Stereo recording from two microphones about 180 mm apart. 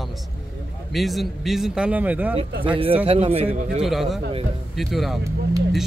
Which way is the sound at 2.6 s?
30° right (ahead or behind).